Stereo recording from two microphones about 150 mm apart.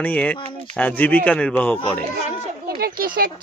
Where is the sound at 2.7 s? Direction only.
85° right.